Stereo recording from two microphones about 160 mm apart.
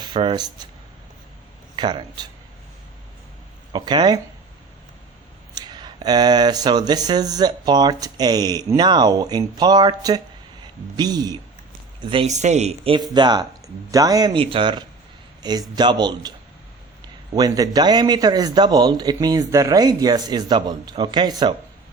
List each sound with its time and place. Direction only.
0.0 s speech: 30° right (ahead or behind)
1.7 s speech: 30° right (ahead or behind)
3.7 s speech: 25° right (ahead or behind)
5.5 s speech: 25° right (ahead or behind)
12.3 s speech: 45° right (ahead or behind); by 16.3 s 25° right (ahead or behind)
17.3 s speech: 25° right (ahead or behind)